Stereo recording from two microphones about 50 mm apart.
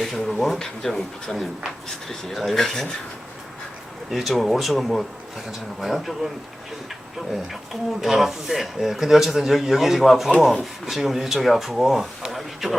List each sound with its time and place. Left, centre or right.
0.0 s speech: centre
0.6 s speech: centre
4.1 s speech: centre
7.7 s speech: centre